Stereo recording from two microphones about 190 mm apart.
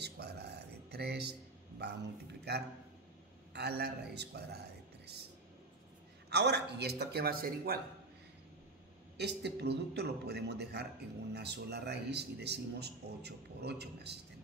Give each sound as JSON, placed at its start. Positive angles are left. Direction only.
{"t": 0.0, "sound": "a sound", "side_deg": -60}
{"t": 2.5, "sound": "speech", "side_deg": -60}
{"t": 6.3, "sound": "speech", "side_deg": -60}
{"t": 9.1, "sound": "speech", "side_deg": -60}